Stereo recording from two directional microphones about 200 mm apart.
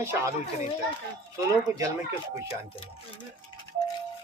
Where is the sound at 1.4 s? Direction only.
15° right (ahead or behind).